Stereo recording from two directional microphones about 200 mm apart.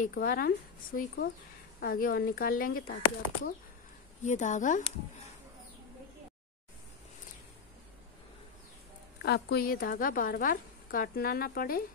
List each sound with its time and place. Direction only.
0.0 s a woman's voice: 45° left (ahead or behind)
4.2 s speech: 35° left (ahead or behind)
9.2 s a woman's voice: 55° left (ahead or behind)